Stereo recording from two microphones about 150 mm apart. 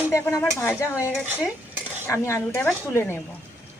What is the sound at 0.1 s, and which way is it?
A man's voice, 20° left (ahead or behind).